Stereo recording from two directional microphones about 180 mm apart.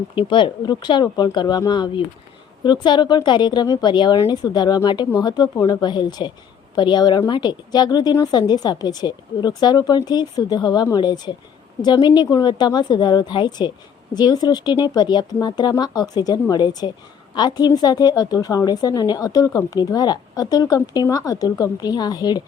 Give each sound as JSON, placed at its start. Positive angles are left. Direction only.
{"t": 0.2, "sound": "a woman's voice", "side_deg": 25}